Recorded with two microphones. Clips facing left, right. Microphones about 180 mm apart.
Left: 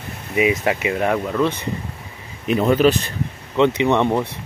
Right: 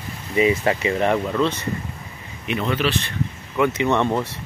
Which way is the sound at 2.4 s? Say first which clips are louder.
Left 7 dB; 40° left (ahead or behind).